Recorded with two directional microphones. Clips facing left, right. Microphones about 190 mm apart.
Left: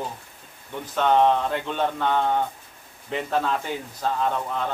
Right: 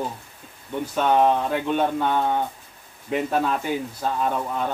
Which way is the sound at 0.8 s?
10° right (ahead or behind).